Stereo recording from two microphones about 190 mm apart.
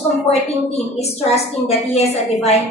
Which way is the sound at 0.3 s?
35° left (ahead or behind).